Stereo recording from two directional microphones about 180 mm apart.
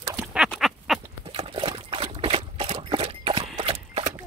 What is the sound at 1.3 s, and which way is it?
Trickle, 30° right (ahead or behind).